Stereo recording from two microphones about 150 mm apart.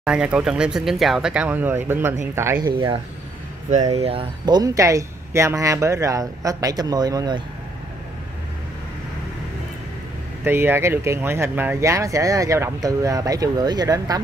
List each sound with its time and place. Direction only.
0.0 s speech: 5° right (ahead or behind)
4.0 s speech: 35° right (ahead or behind)
10.4 s speech: 15° right (ahead or behind)